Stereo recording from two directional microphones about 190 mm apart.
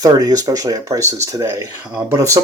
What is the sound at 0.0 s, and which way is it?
Speech, 20° right (ahead or behind).